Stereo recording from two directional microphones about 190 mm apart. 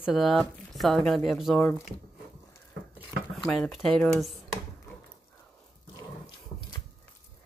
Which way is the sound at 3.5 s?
Centre (ahead or behind).